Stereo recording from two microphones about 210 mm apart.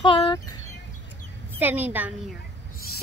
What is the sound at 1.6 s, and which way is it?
Speech, 10° right (ahead or behind).